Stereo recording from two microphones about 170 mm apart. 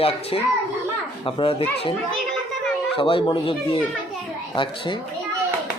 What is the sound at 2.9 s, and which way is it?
Speech, 30° left (ahead or behind).